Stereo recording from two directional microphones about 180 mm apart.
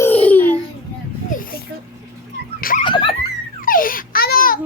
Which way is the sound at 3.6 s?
50° left (ahead or behind).